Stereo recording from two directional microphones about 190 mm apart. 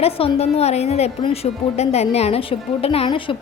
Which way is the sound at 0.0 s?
30° left (ahead or behind).